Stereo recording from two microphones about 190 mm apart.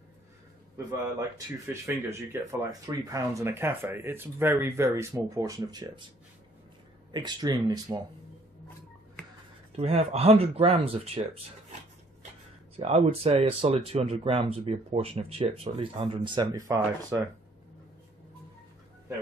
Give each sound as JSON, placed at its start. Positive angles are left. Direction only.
{"t": 1.7, "sound": "speech", "side_deg": -15}
{"t": 7.1, "sound": "speech", "side_deg": -20}
{"t": 9.8, "sound": "speech", "side_deg": -30}
{"t": 12.7, "sound": "speech", "side_deg": -35}